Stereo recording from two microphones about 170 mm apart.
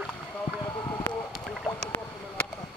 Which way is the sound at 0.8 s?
15° left (ahead or behind).